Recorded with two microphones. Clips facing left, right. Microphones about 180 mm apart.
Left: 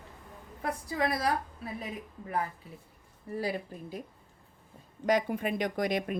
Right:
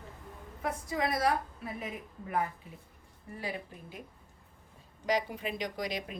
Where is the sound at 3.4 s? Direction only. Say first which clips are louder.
Left 5 dB; 35° left (ahead or behind).